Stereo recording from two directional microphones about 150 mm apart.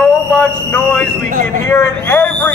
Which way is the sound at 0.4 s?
10° left (ahead or behind).